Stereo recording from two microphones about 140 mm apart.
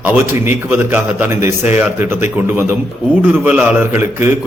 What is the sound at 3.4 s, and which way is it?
Speech, 5° right (ahead or behind).